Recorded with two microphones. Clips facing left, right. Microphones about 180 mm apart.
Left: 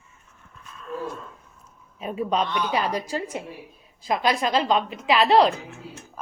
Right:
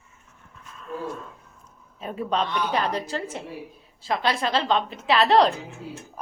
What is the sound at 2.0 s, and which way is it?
A woman's voice, 15° left (ahead or behind).